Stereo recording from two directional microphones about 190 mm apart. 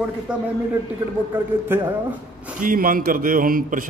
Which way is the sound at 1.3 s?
10° right (ahead or behind).